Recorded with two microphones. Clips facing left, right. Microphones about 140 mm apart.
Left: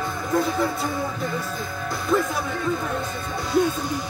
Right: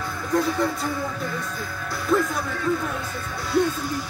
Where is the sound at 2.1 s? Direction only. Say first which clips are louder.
Right 1 dB; centre (ahead or behind).